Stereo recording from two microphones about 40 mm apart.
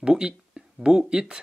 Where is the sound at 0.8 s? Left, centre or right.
Centre.